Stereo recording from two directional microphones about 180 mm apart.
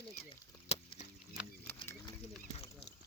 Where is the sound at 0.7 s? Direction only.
35° left (ahead or behind).